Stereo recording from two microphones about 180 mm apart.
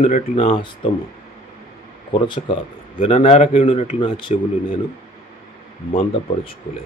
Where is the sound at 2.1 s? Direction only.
25° left (ahead or behind).